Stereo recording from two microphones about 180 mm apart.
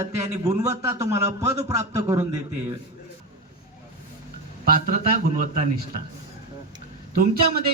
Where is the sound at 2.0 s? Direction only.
15° right (ahead or behind).